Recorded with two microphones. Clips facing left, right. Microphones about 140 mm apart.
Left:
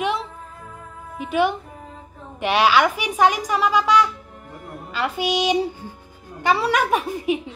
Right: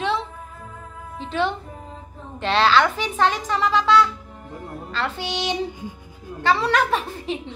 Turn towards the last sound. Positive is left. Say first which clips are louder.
# left 4 dB
turn(degrees=15)  # may be behind; listen again after turning